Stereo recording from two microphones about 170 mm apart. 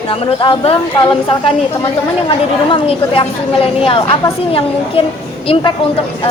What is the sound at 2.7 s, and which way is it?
A woman's voice, 35° left (ahead or behind).